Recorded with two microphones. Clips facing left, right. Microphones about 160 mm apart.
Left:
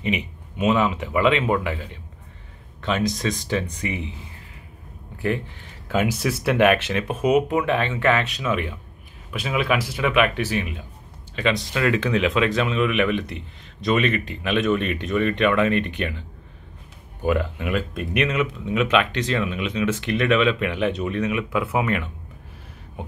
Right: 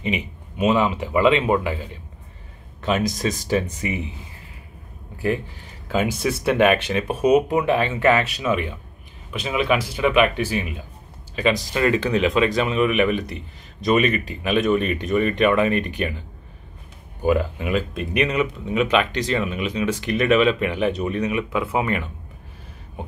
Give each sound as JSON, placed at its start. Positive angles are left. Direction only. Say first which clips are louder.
{"t": 0.0, "sound": "speech", "louder": "even", "side_deg": 0}
{"t": 3.0, "sound": "speech", "louder": "even", "side_deg": -45}
{"t": 3.3, "sound": "speech", "louder": "right 3 dB", "side_deg": -10}
{"t": 5.9, "sound": "speech", "louder": "right 1 dB", "side_deg": 0}
{"t": 17.2, "sound": "speech", "louder": "right 2 dB", "side_deg": 0}